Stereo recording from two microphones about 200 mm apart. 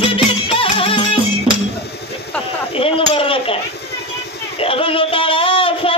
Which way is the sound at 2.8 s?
25° left (ahead or behind).